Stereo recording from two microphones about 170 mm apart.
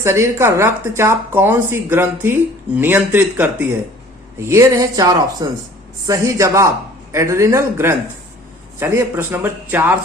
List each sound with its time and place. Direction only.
0.0 s a woman's voice: 15° right (ahead or behind)